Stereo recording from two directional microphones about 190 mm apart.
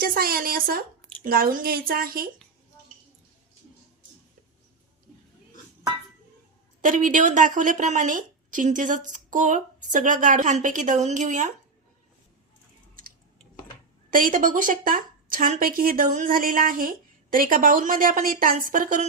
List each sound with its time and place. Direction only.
0.0 s a woman's voice: 50° right (ahead or behind)
6.8 s a woman's voice: 45° right (ahead or behind)
14.1 s a woman's voice: 45° right (ahead or behind)